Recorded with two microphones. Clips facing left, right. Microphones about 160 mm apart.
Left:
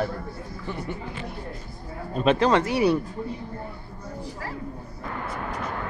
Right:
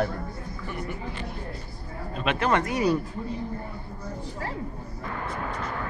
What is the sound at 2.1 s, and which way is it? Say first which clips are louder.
Speech: left 7 dB; 35° left (ahead or behind).